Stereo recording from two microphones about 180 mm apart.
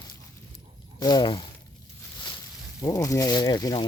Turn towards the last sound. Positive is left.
turn(degrees=20)  # may be behind; listen again after turning